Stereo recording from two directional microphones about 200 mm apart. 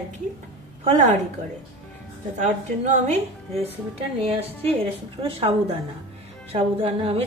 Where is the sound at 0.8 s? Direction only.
35° right (ahead or behind).